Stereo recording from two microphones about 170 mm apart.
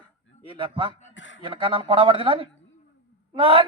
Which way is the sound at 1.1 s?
90° left.